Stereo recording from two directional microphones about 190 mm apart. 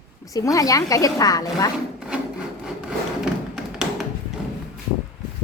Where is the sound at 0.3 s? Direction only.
15° left (ahead or behind).